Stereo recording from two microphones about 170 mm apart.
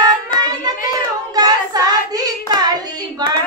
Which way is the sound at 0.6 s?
20° right (ahead or behind).